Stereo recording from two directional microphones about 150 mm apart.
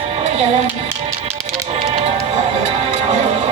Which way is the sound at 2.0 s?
45° right (ahead or behind).